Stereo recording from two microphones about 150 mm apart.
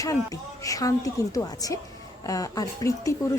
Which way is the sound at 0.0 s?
20° left (ahead or behind).